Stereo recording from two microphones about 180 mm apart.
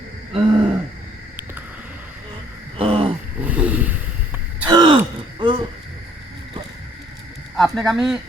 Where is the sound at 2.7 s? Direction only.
30° right (ahead or behind).